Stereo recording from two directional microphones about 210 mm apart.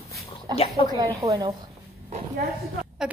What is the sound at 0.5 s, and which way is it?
Speech, 25° left (ahead or behind).